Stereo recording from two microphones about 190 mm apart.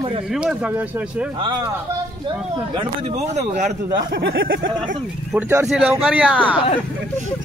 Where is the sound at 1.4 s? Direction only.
25° right (ahead or behind).